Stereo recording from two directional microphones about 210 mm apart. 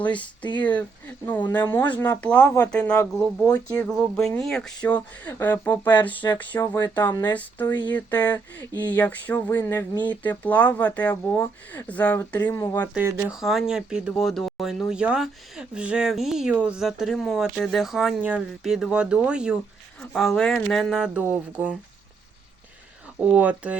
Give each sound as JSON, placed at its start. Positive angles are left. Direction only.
{"t": 0.2, "sound": "speech", "side_deg": 20}
{"t": 0.6, "sound": "speech", "side_deg": 5}
{"t": 3.7, "sound": "speech", "side_deg": 5}
{"t": 7.9, "sound": "speech", "side_deg": 5}
{"t": 12.9, "sound": "speech", "side_deg": -10}
{"t": 23.2, "sound": "speech", "side_deg": -5}